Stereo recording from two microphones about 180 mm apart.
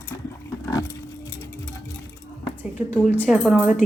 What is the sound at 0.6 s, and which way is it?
Roaring cats, 15° left (ahead or behind).